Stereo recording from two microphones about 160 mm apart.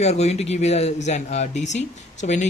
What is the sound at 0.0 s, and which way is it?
Speech, 45° left (ahead or behind).